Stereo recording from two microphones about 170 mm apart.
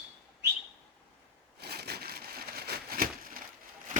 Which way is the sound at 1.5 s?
70° right (ahead or behind).